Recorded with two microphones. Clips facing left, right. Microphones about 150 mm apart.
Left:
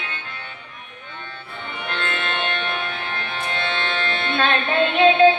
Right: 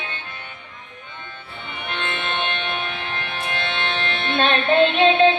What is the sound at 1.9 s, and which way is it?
Music, 20° right (ahead or behind).